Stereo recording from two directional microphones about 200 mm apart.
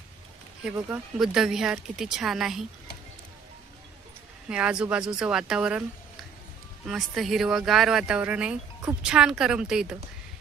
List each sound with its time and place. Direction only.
0.9 s speech: 5° right (ahead or behind)
4.4 s speech: 5° right (ahead or behind)
6.8 s speech: centre (ahead or behind)